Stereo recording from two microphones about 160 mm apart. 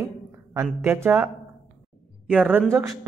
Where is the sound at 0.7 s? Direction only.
15° right (ahead or behind).